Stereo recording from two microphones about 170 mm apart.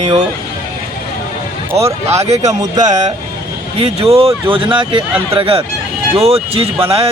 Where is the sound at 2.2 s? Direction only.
40° right (ahead or behind).